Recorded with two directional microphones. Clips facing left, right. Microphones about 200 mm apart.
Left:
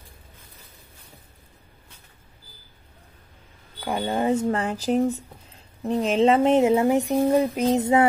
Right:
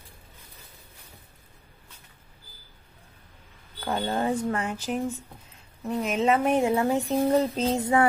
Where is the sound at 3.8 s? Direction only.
15° left (ahead or behind).